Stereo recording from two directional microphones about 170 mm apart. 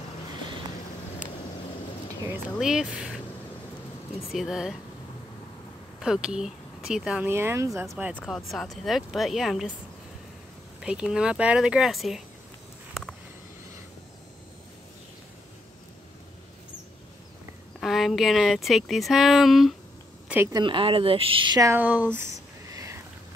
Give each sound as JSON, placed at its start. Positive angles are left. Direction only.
{"t": 2.2, "sound": "speech", "side_deg": -10}
{"t": 4.3, "sound": "speech", "side_deg": 0}
{"t": 5.9, "sound": "speech", "side_deg": -5}
{"t": 8.2, "sound": "speech", "side_deg": 0}
{"t": 10.8, "sound": "speech", "side_deg": -5}
{"t": 17.7, "sound": "speech", "side_deg": 0}
{"t": 20.5, "sound": "speech", "side_deg": -30}